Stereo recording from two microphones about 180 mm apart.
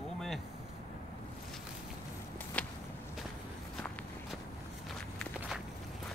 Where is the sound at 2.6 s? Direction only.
5° left (ahead or behind).